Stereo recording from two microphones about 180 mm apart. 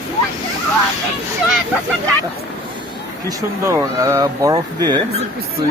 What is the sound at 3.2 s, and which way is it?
Speech, 15° right (ahead or behind).